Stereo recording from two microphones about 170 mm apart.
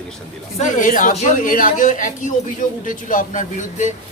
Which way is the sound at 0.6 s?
50° left (ahead or behind).